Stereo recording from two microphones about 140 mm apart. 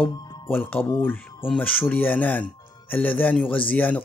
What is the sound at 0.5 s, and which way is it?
Speech, 15° left (ahead or behind).